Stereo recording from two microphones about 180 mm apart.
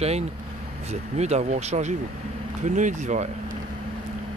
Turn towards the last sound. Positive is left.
turn(degrees=-40)  # may be behind; listen again after turning